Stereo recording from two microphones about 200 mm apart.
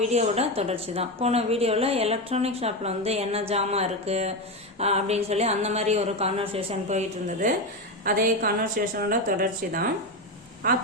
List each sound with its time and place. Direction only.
0.1 s a woman's voice: 30° right (ahead or behind)
8.0 s speech: 45° right (ahead or behind)